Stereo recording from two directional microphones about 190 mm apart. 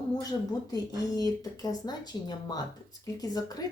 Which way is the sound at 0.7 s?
20° left (ahead or behind).